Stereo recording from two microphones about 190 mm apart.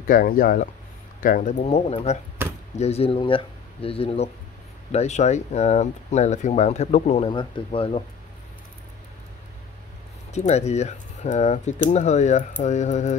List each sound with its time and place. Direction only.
0.0 s speech: 45° left (ahead or behind)
2.4 s chop: 10° right (ahead or behind)
2.8 s speech: 30° left (ahead or behind)
7.2 s speech: 25° left (ahead or behind)
10.3 s speech: 35° left (ahead or behind)